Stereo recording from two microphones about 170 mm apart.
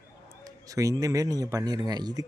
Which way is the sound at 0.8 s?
20° right (ahead or behind).